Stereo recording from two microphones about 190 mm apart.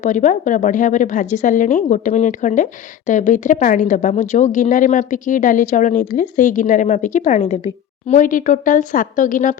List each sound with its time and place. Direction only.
0.0 s speech: 40° left (ahead or behind)